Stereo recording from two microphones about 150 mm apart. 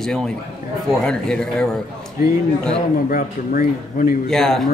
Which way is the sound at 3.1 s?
65° left (ahead or behind).